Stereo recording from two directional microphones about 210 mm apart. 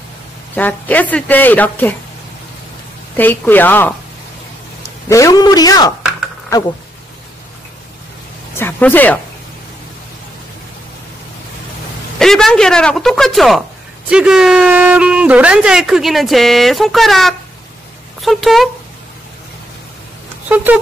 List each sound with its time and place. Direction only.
0.6 s a woman's voice: 10° left (ahead or behind)
3.2 s a woman's voice: 10° left (ahead or behind)
5.1 s a woman's voice: 15° left (ahead or behind)
8.5 s a woman's voice: 10° left (ahead or behind)
12.2 s speech: centre (ahead or behind)
20.4 s speech: 10° right (ahead or behind)